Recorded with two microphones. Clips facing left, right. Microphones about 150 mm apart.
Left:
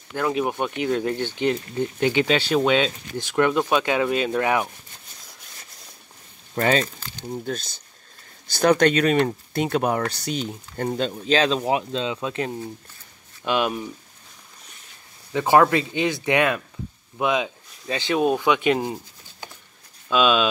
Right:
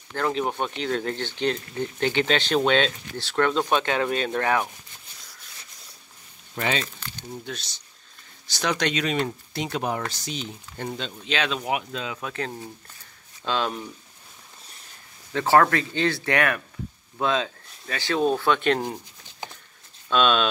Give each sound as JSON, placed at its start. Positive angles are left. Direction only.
{"t": 0.1, "sound": "speech", "side_deg": 10}
{"t": 6.5, "sound": "speech", "side_deg": 40}
{"t": 10.4, "sound": "speech", "side_deg": 45}
{"t": 15.3, "sound": "speech", "side_deg": 15}
{"t": 20.1, "sound": "speech", "side_deg": 5}